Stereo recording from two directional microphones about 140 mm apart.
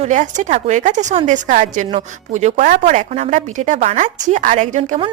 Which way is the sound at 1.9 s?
55° right (ahead or behind).